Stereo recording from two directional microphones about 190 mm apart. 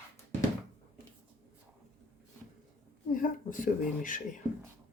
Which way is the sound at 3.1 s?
45° left (ahead or behind).